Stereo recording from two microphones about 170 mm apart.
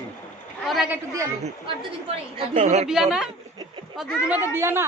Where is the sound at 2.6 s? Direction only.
40° right (ahead or behind).